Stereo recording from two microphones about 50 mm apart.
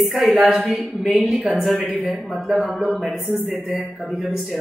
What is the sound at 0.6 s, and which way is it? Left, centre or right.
Speech, centre.